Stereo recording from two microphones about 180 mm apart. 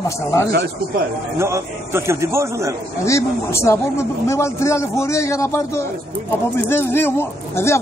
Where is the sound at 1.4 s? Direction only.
15° right (ahead or behind).